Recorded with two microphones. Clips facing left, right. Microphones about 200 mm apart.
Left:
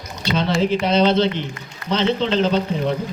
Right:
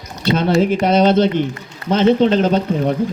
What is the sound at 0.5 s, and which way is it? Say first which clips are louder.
Speech: right 3 dB; 45° right (ahead or behind).